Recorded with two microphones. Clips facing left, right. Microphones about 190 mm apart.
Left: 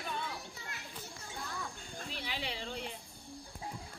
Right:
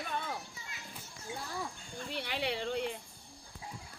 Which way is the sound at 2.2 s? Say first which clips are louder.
Right 7 dB; 60° right (ahead or behind).